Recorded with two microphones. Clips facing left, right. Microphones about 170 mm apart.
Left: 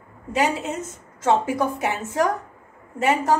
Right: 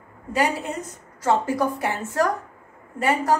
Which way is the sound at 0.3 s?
20° left (ahead or behind).